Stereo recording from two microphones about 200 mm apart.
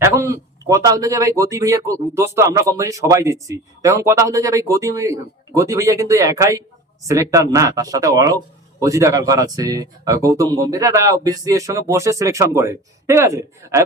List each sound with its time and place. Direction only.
0.0 s speech: 15° right (ahead or behind)